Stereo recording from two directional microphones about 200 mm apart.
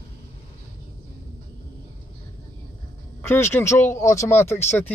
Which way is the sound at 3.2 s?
10° left (ahead or behind).